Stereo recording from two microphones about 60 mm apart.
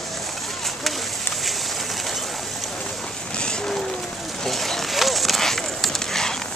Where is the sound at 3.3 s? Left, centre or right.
Centre.